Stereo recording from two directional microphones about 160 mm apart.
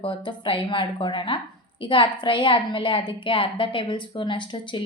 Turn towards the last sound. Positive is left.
turn(degrees=30)  # may be behind; listen again after turning